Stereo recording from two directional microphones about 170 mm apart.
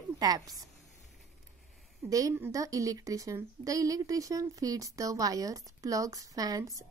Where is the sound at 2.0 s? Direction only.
20° right (ahead or behind).